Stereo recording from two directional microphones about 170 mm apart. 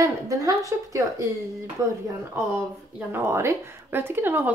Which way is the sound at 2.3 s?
15° right (ahead or behind).